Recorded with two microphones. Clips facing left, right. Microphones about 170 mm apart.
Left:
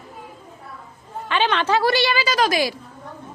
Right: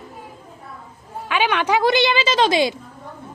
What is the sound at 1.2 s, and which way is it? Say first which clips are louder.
A woman's voice: right 1 dB; 10° right (ahead or behind).